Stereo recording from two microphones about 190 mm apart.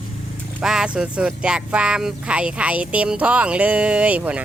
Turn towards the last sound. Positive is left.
turn(degrees=-5)  # may be behind; listen again after turning